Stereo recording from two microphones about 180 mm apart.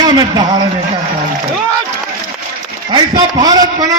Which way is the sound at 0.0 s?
25° right (ahead or behind).